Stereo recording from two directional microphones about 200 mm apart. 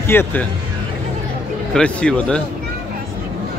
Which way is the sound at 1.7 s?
5° left (ahead or behind).